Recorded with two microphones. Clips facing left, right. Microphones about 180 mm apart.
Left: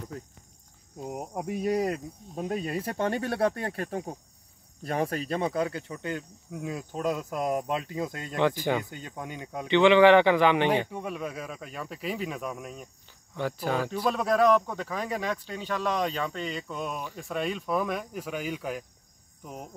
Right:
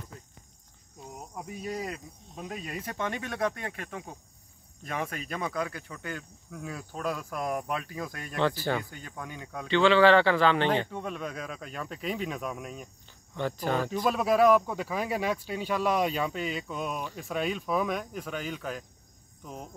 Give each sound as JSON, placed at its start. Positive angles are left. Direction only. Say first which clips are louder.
{"t": 1.5, "sound": "speech", "louder": "left 8 dB", "side_deg": 55}
{"t": 14.0, "sound": "speech", "louder": "right 1 dB", "side_deg": -5}